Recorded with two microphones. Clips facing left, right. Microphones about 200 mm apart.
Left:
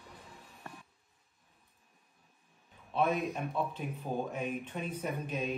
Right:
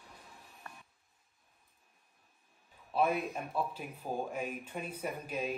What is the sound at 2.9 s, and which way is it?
Speech, 5° right (ahead or behind).